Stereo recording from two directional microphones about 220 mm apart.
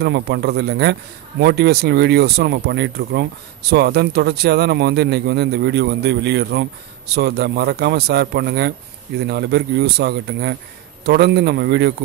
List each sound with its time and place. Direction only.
0.0 s speech: 50° right (ahead or behind)